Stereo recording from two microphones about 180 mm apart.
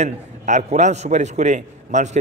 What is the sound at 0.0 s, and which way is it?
A man's voice, 40° right (ahead or behind).